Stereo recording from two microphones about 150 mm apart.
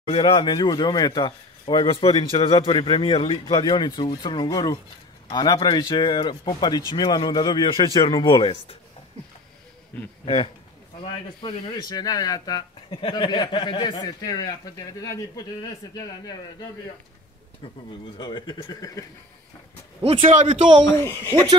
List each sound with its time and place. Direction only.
0.0 s speech: 35° left (ahead or behind)
10.2 s speech: 35° left (ahead or behind)
18.1 s speech: 30° left (ahead or behind)
20.0 s speech: 40° right (ahead or behind)
20.2 s speech: 55° right (ahead or behind)
20.8 s speech: 15° left (ahead or behind)